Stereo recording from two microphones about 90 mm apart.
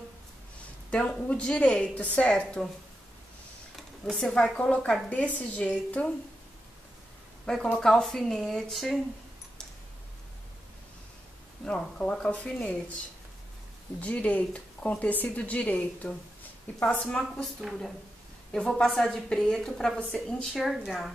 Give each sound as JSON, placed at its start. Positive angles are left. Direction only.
{"t": 0.8, "sound": "speech", "side_deg": 10}
{"t": 3.7, "sound": "speech", "side_deg": 5}
{"t": 7.4, "sound": "a woman's voice", "side_deg": 5}
{"t": 11.6, "sound": "speech", "side_deg": 10}
{"t": 13.9, "sound": "speech", "side_deg": 15}
{"t": 17.6, "sound": "a woman's voice", "side_deg": 0}
{"t": 20.5, "sound": "a woman's voice", "side_deg": 0}